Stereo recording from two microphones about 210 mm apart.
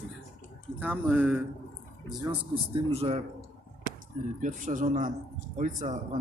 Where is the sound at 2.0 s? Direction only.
25° right (ahead or behind).